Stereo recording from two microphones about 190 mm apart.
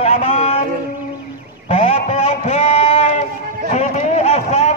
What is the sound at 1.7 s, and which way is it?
Speech, 30° left (ahead or behind).